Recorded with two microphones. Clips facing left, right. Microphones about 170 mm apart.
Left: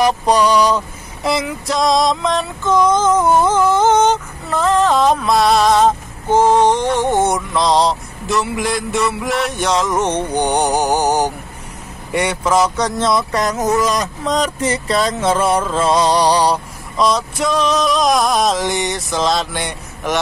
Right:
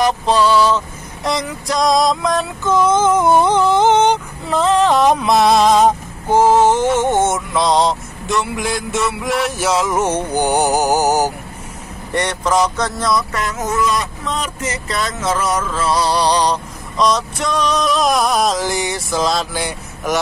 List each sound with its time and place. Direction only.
0.0 s a sound: 15° left (ahead or behind)
1.2 s speech: 5° left (ahead or behind)
3.0 s female singing: 10° right (ahead or behind)
12.1 s speech: 5° left (ahead or behind)
13.0 s speech: 25° left (ahead or behind)
13.4 s speech: 40° left (ahead or behind); by 20.2 s 5° right (ahead or behind)